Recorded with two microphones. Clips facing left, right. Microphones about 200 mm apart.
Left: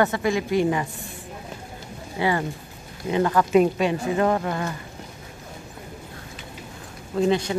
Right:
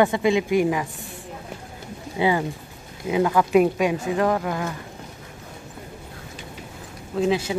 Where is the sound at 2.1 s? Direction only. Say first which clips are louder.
Right 2 dB; 15° right (ahead or behind).